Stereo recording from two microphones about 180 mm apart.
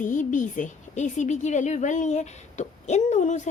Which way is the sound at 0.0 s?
45° left (ahead or behind).